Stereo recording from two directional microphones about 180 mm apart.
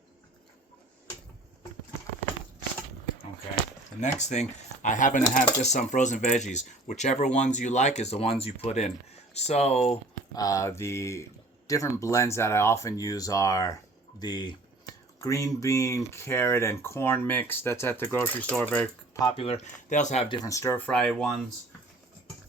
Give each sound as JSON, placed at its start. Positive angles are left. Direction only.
{"t": 4.0, "sound": "speech", "side_deg": 40}
{"t": 9.9, "sound": "speech", "side_deg": 20}
{"t": 19.2, "sound": "speech", "side_deg": 30}
{"t": 20.2, "sound": "speech", "side_deg": 25}